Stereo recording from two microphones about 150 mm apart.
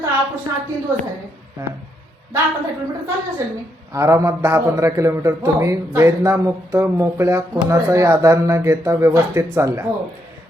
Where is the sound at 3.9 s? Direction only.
20° right (ahead or behind).